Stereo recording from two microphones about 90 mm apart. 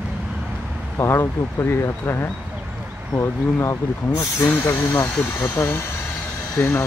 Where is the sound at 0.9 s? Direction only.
30° left (ahead or behind).